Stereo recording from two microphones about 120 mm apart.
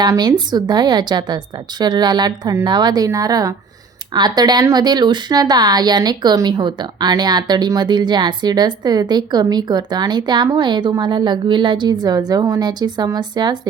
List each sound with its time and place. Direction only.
0.0 s speech: 35° right (ahead or behind)